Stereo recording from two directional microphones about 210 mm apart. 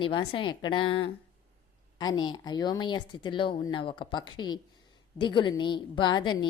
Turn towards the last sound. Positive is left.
turn(degrees=20)  # may be behind; listen again after turning